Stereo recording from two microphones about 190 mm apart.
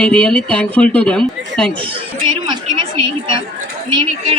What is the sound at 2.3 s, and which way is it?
A woman's voice, 25° right (ahead or behind).